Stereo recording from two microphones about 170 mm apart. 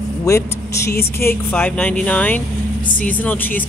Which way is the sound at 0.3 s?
20° left (ahead or behind).